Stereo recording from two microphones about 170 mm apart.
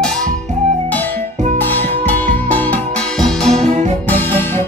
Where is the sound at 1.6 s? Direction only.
10° left (ahead or behind).